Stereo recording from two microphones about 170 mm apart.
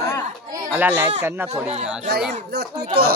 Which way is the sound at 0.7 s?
10° right (ahead or behind).